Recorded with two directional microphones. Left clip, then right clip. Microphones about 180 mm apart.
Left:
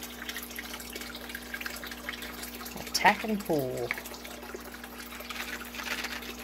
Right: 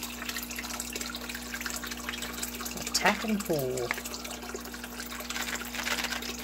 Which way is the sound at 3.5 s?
20° left (ahead or behind).